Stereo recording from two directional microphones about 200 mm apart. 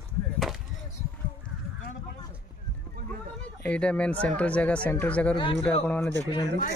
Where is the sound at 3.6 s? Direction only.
5° left (ahead or behind).